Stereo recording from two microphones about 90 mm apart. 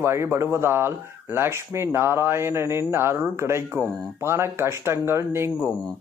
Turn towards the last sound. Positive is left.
turn(degrees=-25)  # may be behind; listen again after turning